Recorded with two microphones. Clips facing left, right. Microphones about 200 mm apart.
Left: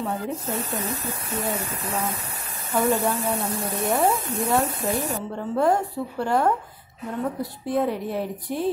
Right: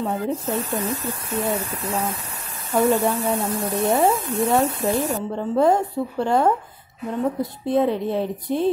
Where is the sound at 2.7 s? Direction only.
40° right (ahead or behind).